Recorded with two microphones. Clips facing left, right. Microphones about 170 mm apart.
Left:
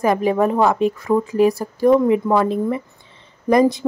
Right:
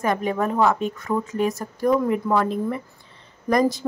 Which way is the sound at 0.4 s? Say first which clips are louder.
Left 4 dB; 30° left (ahead or behind).